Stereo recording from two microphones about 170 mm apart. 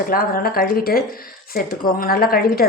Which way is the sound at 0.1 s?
60° left (ahead or behind).